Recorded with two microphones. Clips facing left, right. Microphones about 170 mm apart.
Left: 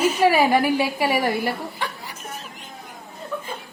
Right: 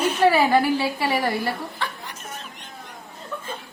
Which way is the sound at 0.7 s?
15° left (ahead or behind).